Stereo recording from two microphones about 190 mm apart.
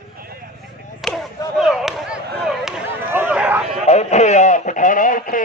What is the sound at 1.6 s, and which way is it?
Speech, centre (ahead or behind).